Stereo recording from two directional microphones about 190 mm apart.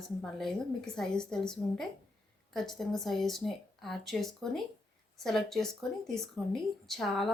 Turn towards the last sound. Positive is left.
turn(degrees=0)  # may be behind; listen again after turning